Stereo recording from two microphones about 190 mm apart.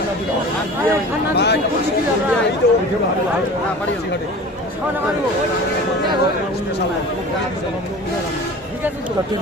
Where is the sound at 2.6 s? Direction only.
65° left (ahead or behind).